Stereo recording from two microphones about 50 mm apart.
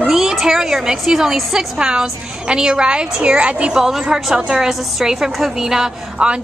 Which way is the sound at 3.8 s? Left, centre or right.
Centre.